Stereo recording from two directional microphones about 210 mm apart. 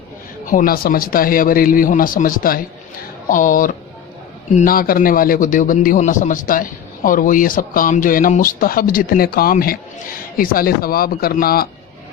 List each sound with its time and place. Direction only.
0.4 s a man's voice: 40° left (ahead or behind)